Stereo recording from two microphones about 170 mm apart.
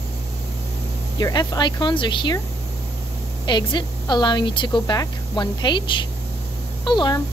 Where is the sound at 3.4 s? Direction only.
25° left (ahead or behind).